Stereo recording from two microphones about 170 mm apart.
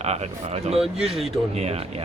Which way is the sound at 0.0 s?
40° right (ahead or behind).